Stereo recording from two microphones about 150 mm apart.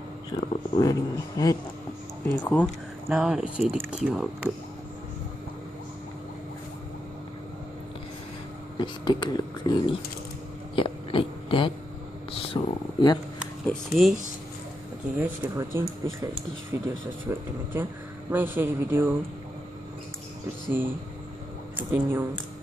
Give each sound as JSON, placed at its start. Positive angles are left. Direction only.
{"t": 0.3, "sound": "speech", "side_deg": 25}
{"t": 2.6, "sound": "speech", "side_deg": -5}
{"t": 8.7, "sound": "speech", "side_deg": 30}
{"t": 10.8, "sound": "a sound", "side_deg": 35}
{"t": 12.3, "sound": "speech", "side_deg": 40}
{"t": 13.7, "sound": "speech", "side_deg": 0}
{"t": 15.1, "sound": "speech", "side_deg": -10}
{"t": 21.7, "sound": "speech", "side_deg": -10}